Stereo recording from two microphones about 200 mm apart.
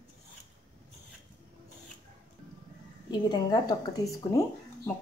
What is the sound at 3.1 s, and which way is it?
Speech, 20° left (ahead or behind).